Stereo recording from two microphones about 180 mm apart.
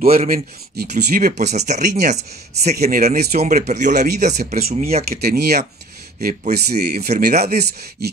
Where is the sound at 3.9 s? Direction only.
65° right (ahead or behind).